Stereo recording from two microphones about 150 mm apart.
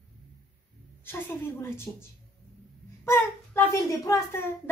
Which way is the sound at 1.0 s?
15° left (ahead or behind).